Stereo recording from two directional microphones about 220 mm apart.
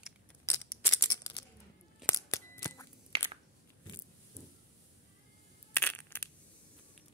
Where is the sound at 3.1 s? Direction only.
25° right (ahead or behind).